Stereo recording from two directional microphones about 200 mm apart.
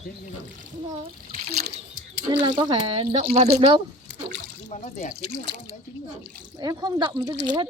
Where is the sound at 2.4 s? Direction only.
25° right (ahead or behind).